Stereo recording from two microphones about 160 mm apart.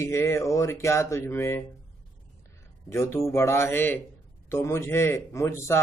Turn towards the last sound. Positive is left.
turn(degrees=15)  # may be behind; listen again after turning